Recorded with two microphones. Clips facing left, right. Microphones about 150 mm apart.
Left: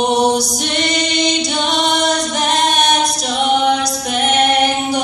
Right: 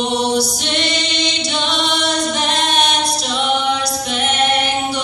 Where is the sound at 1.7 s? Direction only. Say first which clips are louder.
Left 4 dB; 45° left (ahead or behind).